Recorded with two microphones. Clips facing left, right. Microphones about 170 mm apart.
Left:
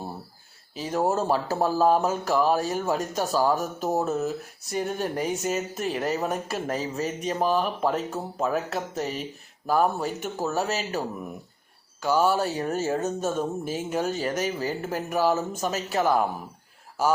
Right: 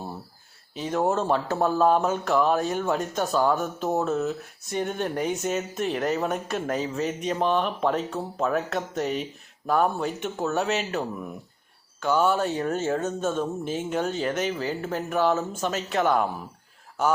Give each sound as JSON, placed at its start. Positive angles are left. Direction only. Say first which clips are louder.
{"t": 0.7, "sound": "speech", "louder": "right 1 dB", "side_deg": 5}
{"t": 14.3, "sound": "speech", "louder": "even", "side_deg": 40}
{"t": 14.8, "sound": "speech", "louder": "even", "side_deg": 5}